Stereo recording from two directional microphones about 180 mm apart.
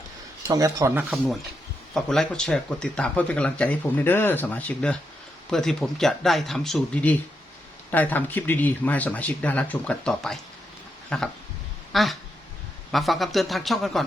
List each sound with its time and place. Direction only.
0.4 s speech: 20° right (ahead or behind)
1.1 s speech: centre (ahead or behind)